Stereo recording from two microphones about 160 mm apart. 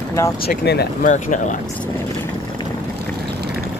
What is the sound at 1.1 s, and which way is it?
Speech, 50° left (ahead or behind).